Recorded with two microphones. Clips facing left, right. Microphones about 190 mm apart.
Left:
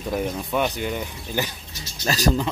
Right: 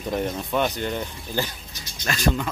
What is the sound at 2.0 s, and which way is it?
Speech, 35° left (ahead or behind).